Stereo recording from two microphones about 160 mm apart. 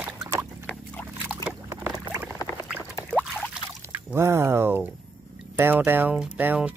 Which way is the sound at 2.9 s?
5° left (ahead or behind).